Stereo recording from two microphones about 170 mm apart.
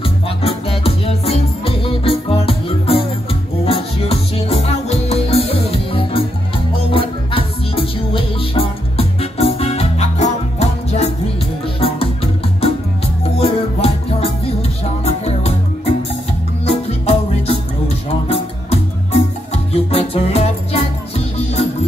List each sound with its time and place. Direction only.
0.4 s music: 35° left (ahead or behind)
13.4 s music: 35° left (ahead or behind)
15.0 s music: 40° left (ahead or behind)